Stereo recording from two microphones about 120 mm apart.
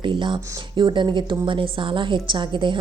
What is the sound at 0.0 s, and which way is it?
A woman's voice, 40° right (ahead or behind).